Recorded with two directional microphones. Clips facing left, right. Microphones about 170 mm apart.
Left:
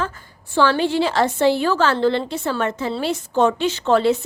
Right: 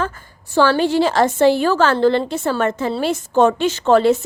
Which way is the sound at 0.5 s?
45° right (ahead or behind).